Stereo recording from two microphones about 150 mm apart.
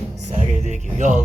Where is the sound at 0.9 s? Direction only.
55° right (ahead or behind).